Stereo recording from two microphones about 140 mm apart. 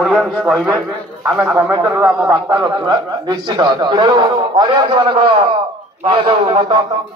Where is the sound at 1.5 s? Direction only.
20° right (ahead or behind).